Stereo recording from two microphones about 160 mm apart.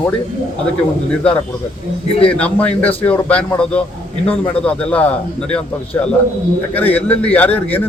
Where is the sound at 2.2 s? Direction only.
10° left (ahead or behind).